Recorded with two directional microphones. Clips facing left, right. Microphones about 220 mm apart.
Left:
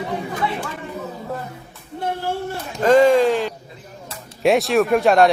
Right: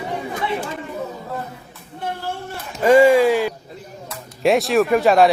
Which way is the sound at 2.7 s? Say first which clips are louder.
Right 1 dB; 10° right (ahead or behind).